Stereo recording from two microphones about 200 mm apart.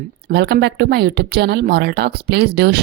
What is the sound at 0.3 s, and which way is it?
Speech, 55° right (ahead or behind).